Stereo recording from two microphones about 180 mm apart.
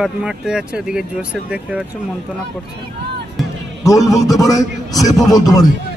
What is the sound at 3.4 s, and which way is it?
Music, centre (ahead or behind).